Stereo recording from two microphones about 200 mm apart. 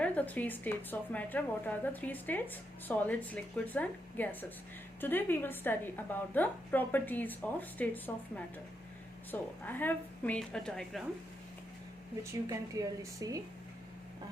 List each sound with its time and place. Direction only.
0.0 s a woman's voice: 5° left (ahead or behind)
9.3 s a woman's voice: 10° left (ahead or behind)
12.2 s a woman's voice: 15° right (ahead or behind)